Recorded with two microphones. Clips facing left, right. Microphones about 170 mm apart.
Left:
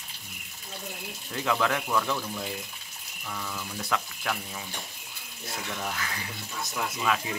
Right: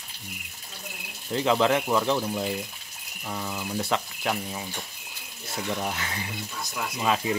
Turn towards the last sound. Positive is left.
turn(degrees=-25)  # may be behind; listen again after turning